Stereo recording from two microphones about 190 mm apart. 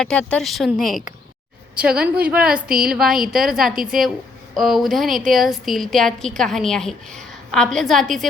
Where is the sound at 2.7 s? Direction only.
50° right (ahead or behind).